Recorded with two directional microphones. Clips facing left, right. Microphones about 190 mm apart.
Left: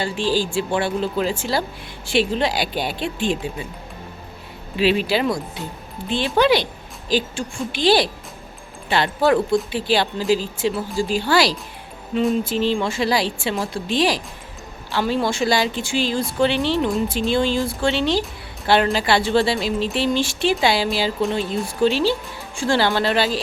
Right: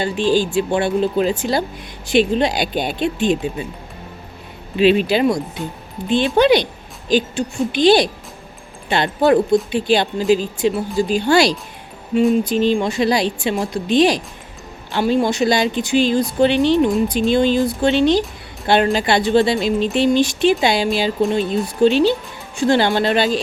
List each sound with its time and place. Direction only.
0.0 s speech: 20° right (ahead or behind)
4.8 s speech: 20° right (ahead or behind)